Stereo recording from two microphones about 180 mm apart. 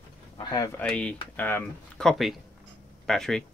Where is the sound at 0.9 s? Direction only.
5° left (ahead or behind).